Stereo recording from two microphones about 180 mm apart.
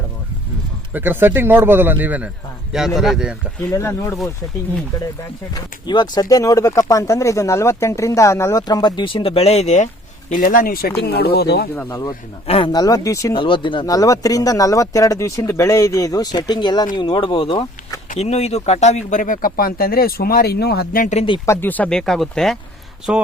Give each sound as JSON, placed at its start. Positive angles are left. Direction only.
{"t": 0.9, "sound": "a man's voice", "side_deg": -10}
{"t": 3.6, "sound": "speech", "side_deg": 15}
{"t": 5.5, "sound": "speech", "side_deg": 25}
{"t": 11.7, "sound": "speech", "side_deg": 15}
{"t": 12.5, "sound": "speech", "side_deg": 30}
{"t": 21.4, "sound": "speech", "side_deg": 15}